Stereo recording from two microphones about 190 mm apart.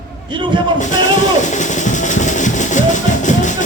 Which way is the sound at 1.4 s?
40° left (ahead or behind).